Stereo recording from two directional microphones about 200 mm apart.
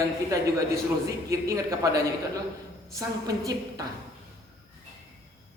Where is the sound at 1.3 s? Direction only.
15° right (ahead or behind).